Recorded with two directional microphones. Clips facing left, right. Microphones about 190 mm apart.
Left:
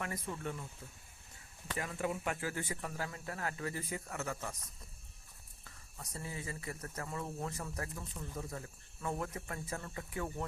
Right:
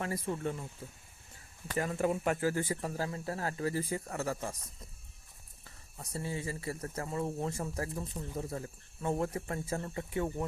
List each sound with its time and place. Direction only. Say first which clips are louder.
0.0 s a man's voice: right 6 dB; 30° right (ahead or behind)
1.6 s a man's voice: right 6 dB; 40° right (ahead or behind)
6.0 s speech: right 6 dB; 30° right (ahead or behind)